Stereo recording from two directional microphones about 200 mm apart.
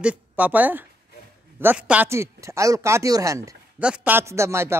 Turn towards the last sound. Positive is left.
turn(degrees=-15)  # may be behind; listen again after turning